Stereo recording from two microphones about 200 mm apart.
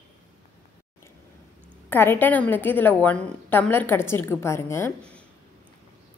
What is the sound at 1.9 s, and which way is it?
A woman's voice, 10° left (ahead or behind).